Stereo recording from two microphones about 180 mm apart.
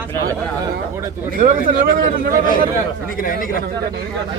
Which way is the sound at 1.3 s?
50° right (ahead or behind).